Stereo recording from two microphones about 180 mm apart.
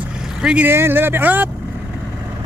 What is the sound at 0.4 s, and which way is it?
Speech, 5° right (ahead or behind).